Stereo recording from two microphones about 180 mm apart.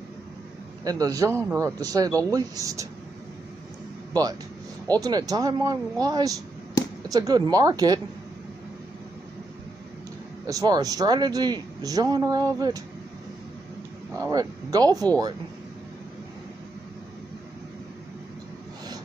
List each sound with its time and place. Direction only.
0.8 s speech: 20° right (ahead or behind)
4.1 s speech: 20° right (ahead or behind)
10.4 s speech: 20° right (ahead or behind)
14.3 s speech: 20° right (ahead or behind)